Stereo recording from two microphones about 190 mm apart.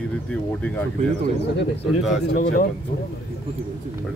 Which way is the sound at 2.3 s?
50° left (ahead or behind).